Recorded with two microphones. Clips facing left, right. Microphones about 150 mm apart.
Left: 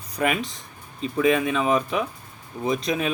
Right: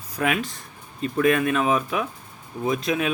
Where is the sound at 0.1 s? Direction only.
Centre (ahead or behind).